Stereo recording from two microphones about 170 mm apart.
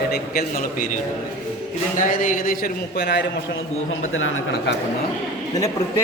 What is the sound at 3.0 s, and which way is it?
Speech, 85° left.